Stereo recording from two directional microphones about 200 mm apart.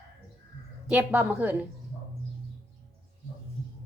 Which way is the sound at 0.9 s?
5° right (ahead or behind).